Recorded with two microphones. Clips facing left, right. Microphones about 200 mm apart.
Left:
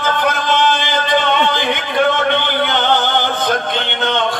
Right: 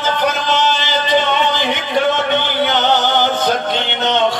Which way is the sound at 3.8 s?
55° left (ahead or behind).